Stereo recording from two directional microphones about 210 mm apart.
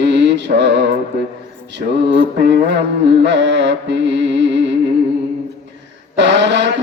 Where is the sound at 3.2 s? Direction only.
55° right (ahead or behind).